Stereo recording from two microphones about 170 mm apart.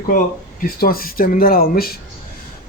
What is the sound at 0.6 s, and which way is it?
Speech, 60° left (ahead or behind).